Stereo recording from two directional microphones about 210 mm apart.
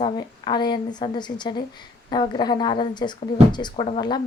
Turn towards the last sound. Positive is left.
turn(degrees=20)  # may be behind; listen again after turning